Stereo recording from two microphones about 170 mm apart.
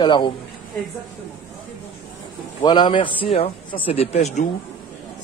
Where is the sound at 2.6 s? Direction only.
25° left (ahead or behind).